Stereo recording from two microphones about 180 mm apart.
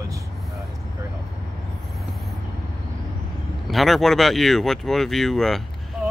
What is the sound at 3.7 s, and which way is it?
Speech, centre (ahead or behind).